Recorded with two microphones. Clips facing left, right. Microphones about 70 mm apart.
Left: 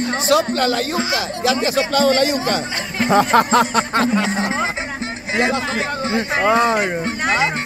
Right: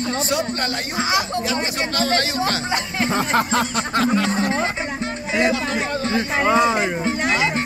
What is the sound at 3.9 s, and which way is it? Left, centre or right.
Speech, left.